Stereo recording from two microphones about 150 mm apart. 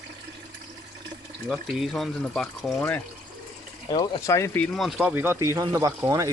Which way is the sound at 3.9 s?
35° left (ahead or behind).